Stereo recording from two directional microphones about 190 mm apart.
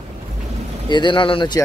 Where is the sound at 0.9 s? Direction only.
25° left (ahead or behind).